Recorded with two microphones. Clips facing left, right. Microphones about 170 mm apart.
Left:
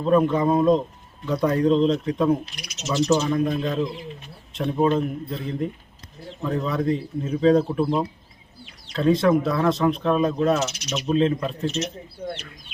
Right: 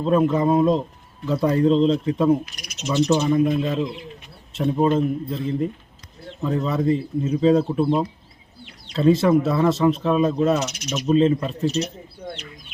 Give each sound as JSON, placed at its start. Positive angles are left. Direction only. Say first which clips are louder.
{"t": 0.0, "sound": "a man's voice", "louder": "even", "side_deg": -5}
{"t": 2.6, "sound": "cricket", "louder": "left 1 dB", "side_deg": -55}
{"t": 2.8, "sound": "a man's voice", "louder": "right 2 dB", "side_deg": -15}
{"t": 8.9, "sound": "a man's voice", "louder": "right 2 dB", "side_deg": -5}
{"t": 11.6, "sound": "speech", "louder": "right 5 dB", "side_deg": -35}